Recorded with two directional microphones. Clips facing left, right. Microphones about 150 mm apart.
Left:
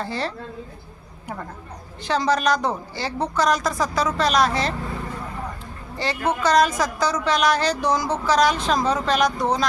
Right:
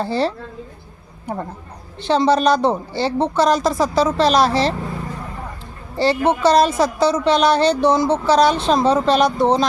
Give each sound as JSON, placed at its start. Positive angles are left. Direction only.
{"t": 0.0, "sound": "a woman's voice", "side_deg": -30}
{"t": 6.0, "sound": "speech", "side_deg": -30}